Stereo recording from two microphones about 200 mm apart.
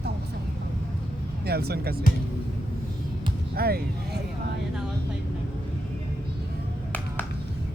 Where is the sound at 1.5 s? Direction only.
50° right (ahead or behind).